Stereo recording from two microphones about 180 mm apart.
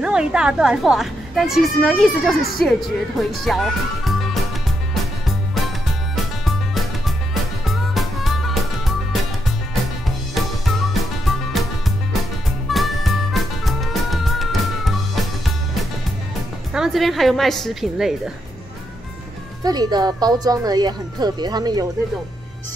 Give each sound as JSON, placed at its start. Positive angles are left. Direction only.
{"t": 0.0, "sound": "speech", "side_deg": -5}
{"t": 3.2, "sound": "music", "side_deg": 0}
{"t": 6.4, "sound": "music", "side_deg": 0}
{"t": 16.7, "sound": "speech", "side_deg": 0}
{"t": 19.6, "sound": "speech", "side_deg": -20}